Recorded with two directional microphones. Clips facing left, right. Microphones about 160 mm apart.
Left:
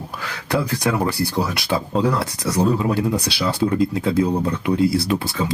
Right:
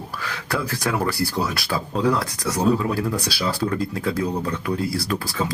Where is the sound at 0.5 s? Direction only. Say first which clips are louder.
Left 4 dB; 20° left (ahead or behind).